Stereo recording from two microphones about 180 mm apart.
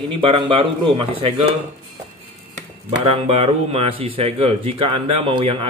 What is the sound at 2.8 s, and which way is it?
A man's voice, 35° right (ahead or behind).